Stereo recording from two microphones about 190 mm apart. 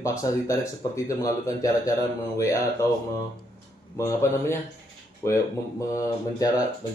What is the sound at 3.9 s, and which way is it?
Speech, 15° left (ahead or behind).